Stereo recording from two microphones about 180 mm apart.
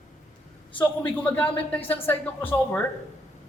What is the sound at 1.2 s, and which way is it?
Speech, 10° left (ahead or behind).